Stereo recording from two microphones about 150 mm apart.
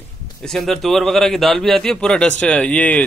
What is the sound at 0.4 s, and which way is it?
A man's voice, centre (ahead or behind).